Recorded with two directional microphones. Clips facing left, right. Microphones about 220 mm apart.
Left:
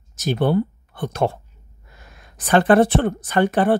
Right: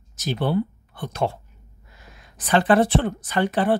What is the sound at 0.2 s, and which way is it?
Speech, 50° left (ahead or behind).